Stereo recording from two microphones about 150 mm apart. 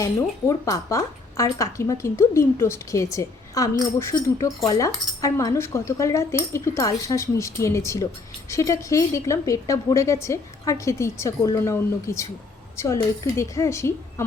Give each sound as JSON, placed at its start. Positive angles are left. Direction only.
{"t": 0.0, "sound": "speech", "side_deg": 20}